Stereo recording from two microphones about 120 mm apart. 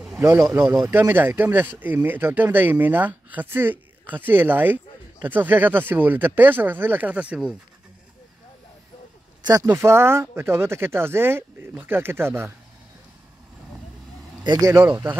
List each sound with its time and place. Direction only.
0.2 s speech: 25° right (ahead or behind)
0.5 s speech: 5° right (ahead or behind)
0.8 s speech: 15° right (ahead or behind)
9.4 s speech: 30° right (ahead or behind)
9.7 s speech: 20° right (ahead or behind)
14.4 s speech: 35° right (ahead or behind)